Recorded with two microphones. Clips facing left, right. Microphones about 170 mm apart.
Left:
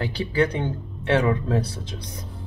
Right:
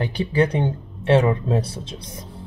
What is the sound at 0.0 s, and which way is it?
Speech, 20° right (ahead or behind).